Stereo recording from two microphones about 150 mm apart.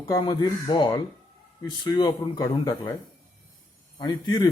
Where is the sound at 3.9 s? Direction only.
30° left (ahead or behind).